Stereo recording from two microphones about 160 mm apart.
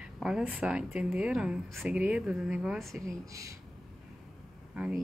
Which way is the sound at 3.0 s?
20° right (ahead or behind).